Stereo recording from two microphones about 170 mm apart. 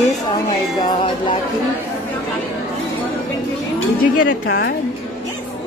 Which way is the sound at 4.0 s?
75° left (ahead or behind).